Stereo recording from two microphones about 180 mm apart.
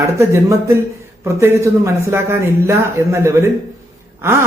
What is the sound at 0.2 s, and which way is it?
A man's voice, 15° right (ahead or behind).